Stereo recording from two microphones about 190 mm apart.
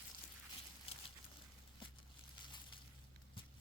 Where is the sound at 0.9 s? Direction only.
30° left (ahead or behind).